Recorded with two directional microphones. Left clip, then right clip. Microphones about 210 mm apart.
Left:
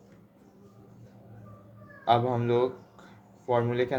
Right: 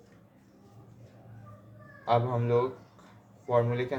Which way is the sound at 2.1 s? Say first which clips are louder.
Left 2 dB; 50° left (ahead or behind).